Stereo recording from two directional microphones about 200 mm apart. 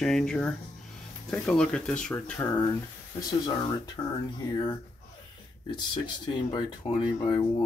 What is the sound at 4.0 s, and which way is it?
Speech, 20° left (ahead or behind).